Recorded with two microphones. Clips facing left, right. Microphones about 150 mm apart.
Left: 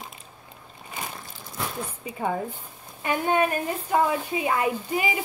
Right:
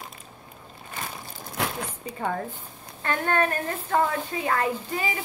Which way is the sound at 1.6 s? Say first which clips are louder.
Right 3 dB; 80° right.